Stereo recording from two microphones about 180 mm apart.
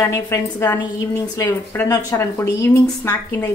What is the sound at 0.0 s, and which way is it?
Speech, 15° left (ahead or behind).